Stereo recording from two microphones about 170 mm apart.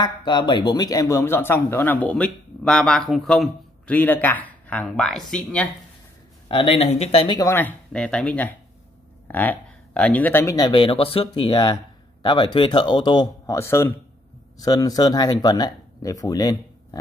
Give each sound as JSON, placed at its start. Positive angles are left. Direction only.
{"t": 0.0, "sound": "speech", "side_deg": 25}
{"t": 6.5, "sound": "speech", "side_deg": 35}
{"t": 7.3, "sound": "speech", "side_deg": 15}